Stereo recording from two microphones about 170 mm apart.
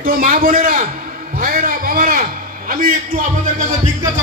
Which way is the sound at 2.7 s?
55° right (ahead or behind).